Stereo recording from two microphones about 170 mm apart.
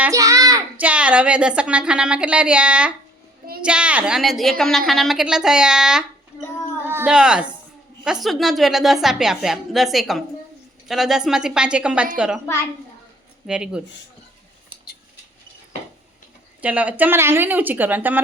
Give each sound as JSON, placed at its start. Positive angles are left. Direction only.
{"t": 0.1, "sound": "child singing", "side_deg": -20}
{"t": 0.8, "sound": "a woman's voice", "side_deg": -10}
{"t": 6.6, "sound": "child singing", "side_deg": 15}
{"t": 6.8, "sound": "a woman's voice", "side_deg": -10}
{"t": 13.5, "sound": "a woman's voice", "side_deg": -5}
{"t": 16.6, "sound": "a woman's voice", "side_deg": -10}